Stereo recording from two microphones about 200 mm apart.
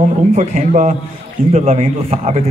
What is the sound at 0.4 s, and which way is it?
A man's voice, 35° right (ahead or behind).